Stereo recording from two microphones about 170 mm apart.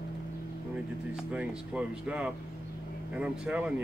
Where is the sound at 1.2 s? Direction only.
5° right (ahead or behind).